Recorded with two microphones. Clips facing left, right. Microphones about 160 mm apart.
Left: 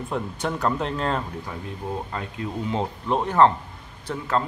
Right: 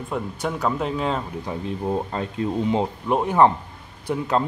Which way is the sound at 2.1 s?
30° right (ahead or behind).